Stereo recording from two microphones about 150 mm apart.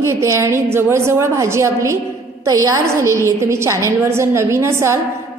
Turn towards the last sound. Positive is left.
turn(degrees=-20)  # may be behind; listen again after turning